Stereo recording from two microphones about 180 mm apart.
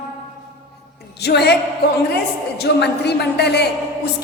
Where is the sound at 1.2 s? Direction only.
65° left (ahead or behind).